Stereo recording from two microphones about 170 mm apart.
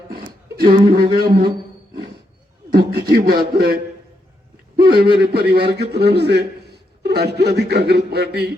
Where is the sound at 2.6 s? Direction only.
65° right (ahead or behind).